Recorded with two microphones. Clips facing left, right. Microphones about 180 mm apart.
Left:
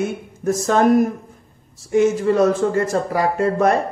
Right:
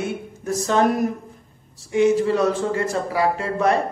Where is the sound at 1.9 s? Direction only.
45° left (ahead or behind).